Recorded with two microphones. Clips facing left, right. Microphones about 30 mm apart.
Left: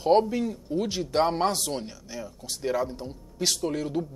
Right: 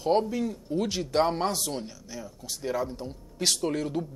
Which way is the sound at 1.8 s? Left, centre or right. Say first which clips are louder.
Left 2 dB; left.